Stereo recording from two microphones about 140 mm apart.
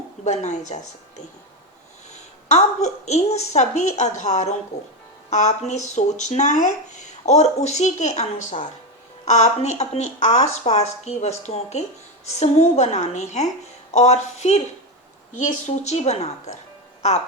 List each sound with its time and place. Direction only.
0.3 s speech: 55° left (ahead or behind)
2.5 s speech: 55° left (ahead or behind)